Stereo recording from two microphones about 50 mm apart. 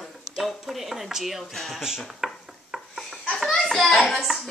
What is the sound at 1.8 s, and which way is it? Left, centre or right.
Dishes, centre.